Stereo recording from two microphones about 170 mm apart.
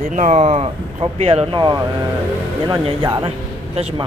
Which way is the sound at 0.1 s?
45° right (ahead or behind).